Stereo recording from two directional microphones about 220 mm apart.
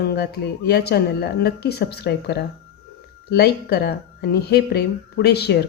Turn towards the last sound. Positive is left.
turn(degrees=50)  # may be behind; listen again after turning